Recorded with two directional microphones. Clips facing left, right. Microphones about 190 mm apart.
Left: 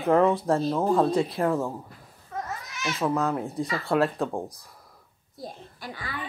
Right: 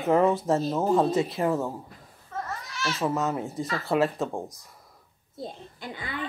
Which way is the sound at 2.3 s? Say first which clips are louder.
Even; 10° left (ahead or behind).